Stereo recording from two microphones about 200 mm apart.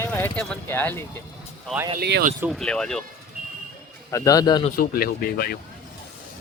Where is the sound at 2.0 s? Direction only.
55° right (ahead or behind).